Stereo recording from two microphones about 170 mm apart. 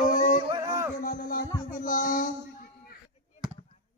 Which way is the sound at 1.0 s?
60° left (ahead or behind).